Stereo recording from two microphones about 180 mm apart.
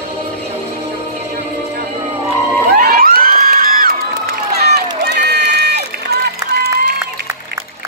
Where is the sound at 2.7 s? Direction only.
55° right (ahead or behind).